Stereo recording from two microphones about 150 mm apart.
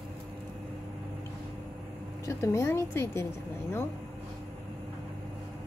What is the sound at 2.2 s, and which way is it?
Speech, 20° left (ahead or behind).